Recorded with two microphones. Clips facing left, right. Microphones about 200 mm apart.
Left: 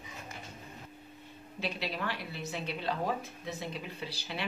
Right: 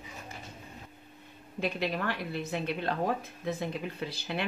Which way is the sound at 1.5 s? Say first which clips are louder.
Right 5 dB; 50° right (ahead or behind).